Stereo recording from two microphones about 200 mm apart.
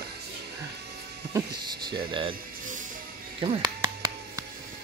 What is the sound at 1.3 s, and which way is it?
Speech, 20° right (ahead or behind).